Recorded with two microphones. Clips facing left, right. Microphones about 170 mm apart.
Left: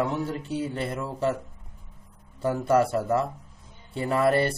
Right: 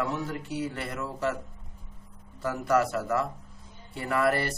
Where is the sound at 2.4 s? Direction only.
30° left (ahead or behind).